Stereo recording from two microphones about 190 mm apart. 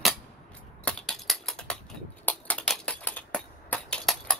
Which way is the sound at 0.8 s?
Centre (ahead or behind).